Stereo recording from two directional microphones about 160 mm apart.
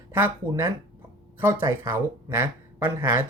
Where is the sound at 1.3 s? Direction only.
15° right (ahead or behind).